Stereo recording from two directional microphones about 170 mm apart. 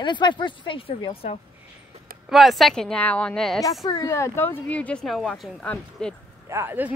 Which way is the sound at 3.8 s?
20° left (ahead or behind).